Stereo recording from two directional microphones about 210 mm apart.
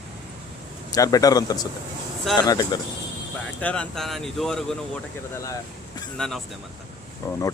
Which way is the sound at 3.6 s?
5° left (ahead or behind).